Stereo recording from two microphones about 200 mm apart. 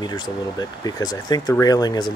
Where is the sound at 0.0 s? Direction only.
20° left (ahead or behind).